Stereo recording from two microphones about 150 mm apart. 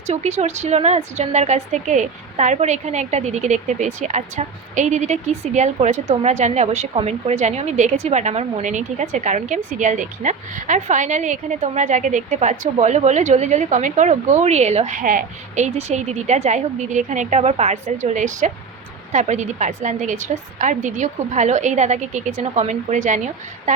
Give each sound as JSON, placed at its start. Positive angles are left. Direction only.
{"t": 0.1, "sound": "a woman's voice", "side_deg": -50}